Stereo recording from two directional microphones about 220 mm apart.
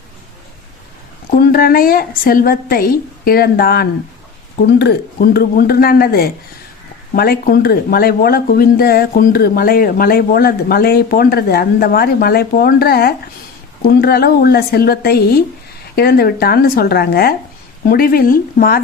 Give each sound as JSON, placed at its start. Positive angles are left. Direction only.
{"t": 1.4, "sound": "speech", "side_deg": 45}